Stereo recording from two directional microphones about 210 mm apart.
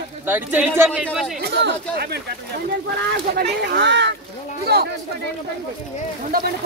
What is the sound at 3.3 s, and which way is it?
Speech, 55° right (ahead or behind).